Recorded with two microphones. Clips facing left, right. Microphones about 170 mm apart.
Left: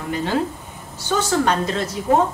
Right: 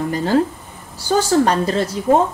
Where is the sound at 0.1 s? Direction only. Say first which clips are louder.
Right 2 dB; 40° right (ahead or behind).